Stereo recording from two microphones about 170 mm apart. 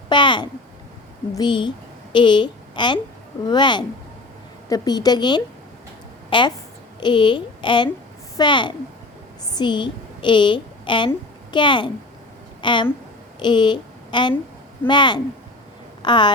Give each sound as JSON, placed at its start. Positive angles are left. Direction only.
{"t": 0.1, "sound": "babbling", "side_deg": 30}
{"t": 1.4, "sound": "a child's voice", "side_deg": 25}